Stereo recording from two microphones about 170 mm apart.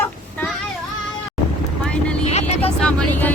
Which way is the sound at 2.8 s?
10° left (ahead or behind).